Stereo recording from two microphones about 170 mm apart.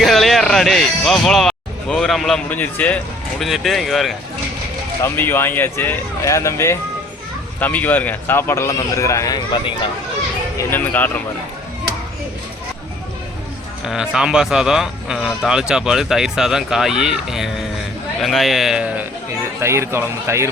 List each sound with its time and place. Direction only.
0.0 s speech: centre (ahead or behind)
5.1 s a man's voice: 10° left (ahead or behind)
10.7 s a man's voice: 10° left (ahead or behind)
13.8 s speech: 5° right (ahead or behind)
19.6 s speech: 15° right (ahead or behind)